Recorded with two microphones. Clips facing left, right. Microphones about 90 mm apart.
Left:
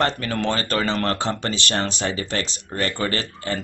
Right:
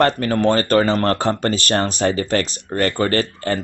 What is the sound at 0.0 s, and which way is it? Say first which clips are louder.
Speech: right 6 dB; 45° right (ahead or behind).